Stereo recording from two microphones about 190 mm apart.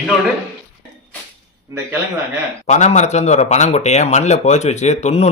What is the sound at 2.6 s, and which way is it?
Speech, 40° left (ahead or behind).